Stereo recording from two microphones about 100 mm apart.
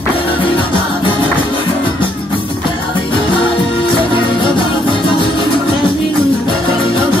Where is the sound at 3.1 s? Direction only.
60° left (ahead or behind).